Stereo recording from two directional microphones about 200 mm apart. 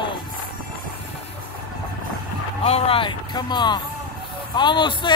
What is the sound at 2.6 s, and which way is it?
Music, 30° left (ahead or behind).